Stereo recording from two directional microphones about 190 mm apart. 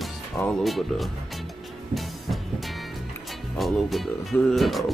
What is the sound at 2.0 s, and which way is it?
Music, centre (ahead or behind).